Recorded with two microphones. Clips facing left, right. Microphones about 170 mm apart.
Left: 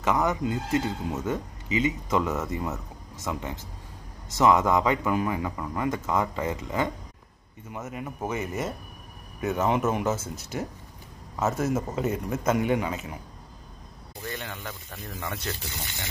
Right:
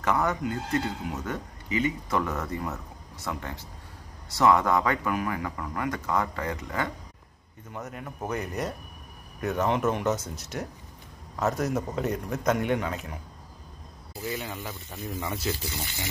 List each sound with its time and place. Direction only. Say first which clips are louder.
0.0 s speech: left 1 dB; 20° left (ahead or behind)
7.7 s a man's voice: left 2 dB; 5° left (ahead or behind)
14.2 s speech: right 2 dB; 5° right (ahead or behind)